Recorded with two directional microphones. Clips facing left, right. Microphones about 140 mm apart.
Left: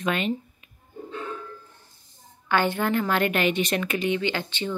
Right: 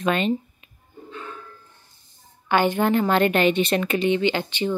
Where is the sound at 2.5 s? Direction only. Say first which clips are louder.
Right 4 dB; 15° right (ahead or behind).